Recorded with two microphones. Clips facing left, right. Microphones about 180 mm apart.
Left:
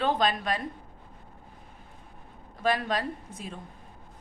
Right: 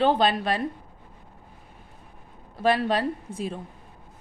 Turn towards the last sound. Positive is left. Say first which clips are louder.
# right 7 dB
turn(degrees=-30)  # may be behind; listen again after turning